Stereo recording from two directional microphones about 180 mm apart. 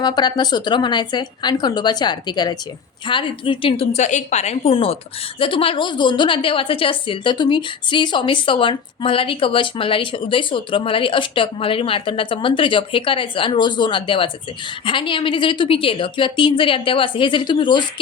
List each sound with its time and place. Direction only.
0.0 s a woman's voice: 25° left (ahead or behind)